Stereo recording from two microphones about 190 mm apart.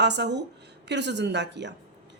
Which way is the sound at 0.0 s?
65° right (ahead or behind).